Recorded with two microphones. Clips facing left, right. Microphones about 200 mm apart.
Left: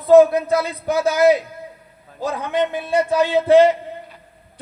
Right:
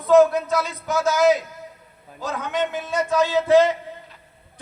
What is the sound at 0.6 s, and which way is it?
Speech, 60° left (ahead or behind).